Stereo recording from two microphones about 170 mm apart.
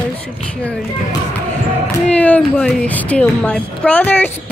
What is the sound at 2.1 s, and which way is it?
Speech, 5° left (ahead or behind).